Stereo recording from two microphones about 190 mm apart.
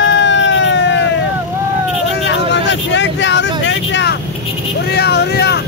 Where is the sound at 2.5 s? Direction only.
70° left (ahead or behind).